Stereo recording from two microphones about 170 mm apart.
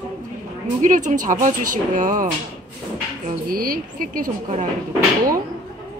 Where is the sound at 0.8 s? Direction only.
50° right (ahead or behind).